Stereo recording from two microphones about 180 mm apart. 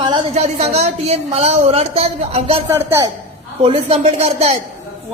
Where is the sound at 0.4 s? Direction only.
35° right (ahead or behind).